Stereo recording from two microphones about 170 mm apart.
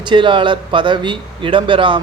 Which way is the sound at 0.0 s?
30° right (ahead or behind).